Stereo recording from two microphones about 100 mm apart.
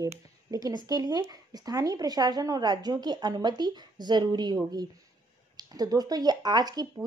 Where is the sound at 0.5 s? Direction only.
40° right (ahead or behind).